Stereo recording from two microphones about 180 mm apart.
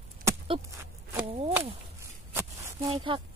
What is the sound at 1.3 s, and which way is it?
Walk, 30° right (ahead or behind).